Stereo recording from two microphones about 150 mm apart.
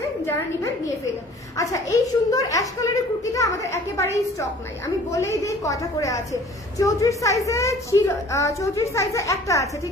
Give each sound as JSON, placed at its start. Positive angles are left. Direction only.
{"t": 1.6, "sound": "a woman's voice", "side_deg": 20}